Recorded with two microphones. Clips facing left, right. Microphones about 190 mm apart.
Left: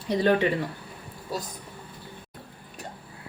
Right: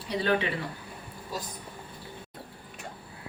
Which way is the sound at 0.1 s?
45° left (ahead or behind).